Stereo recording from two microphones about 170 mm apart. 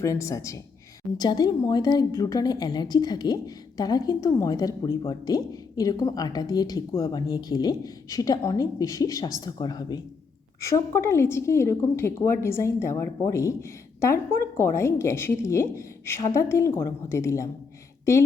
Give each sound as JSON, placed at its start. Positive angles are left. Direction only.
{"t": 0.0, "sound": "a woman's voice", "side_deg": 20}